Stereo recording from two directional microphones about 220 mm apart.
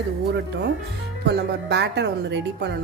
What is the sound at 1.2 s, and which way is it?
A woman's voice, 50° right (ahead or behind).